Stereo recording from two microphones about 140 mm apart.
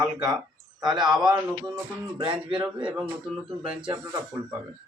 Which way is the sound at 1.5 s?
20° right (ahead or behind).